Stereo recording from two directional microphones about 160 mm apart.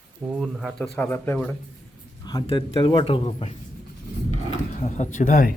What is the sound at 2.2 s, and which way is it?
Speech, 30° left (ahead or behind).